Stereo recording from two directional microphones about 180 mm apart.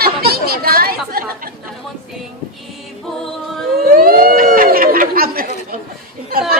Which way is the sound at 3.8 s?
55° right (ahead or behind).